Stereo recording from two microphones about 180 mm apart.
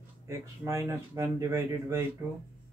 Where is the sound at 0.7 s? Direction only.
15° right (ahead or behind).